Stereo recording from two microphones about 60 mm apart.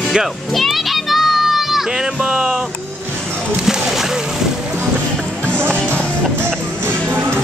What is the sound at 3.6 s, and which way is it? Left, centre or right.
Speech, centre.